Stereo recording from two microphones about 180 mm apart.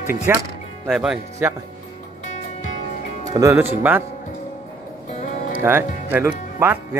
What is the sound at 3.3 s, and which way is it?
Speech, 20° right (ahead or behind).